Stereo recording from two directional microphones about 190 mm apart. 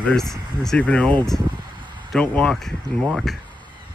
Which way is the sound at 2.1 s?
5° left (ahead or behind).